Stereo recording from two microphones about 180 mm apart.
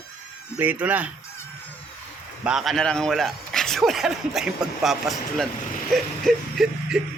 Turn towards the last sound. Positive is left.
turn(degrees=-5)  # may be behind; listen again after turning